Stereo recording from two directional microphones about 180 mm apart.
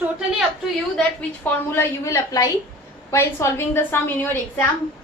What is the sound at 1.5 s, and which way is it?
A woman's voice, 15° left (ahead or behind).